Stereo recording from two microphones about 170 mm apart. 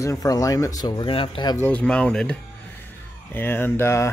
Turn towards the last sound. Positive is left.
turn(degrees=15)  # may be behind; listen again after turning